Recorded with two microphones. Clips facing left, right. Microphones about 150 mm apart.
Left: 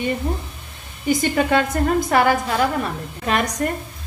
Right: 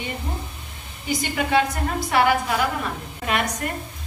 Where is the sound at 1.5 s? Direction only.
50° left (ahead or behind).